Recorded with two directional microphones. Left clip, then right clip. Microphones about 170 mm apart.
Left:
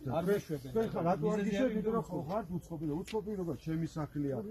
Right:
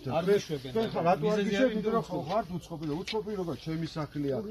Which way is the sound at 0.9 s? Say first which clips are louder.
Right 9 dB; 15° right (ahead or behind).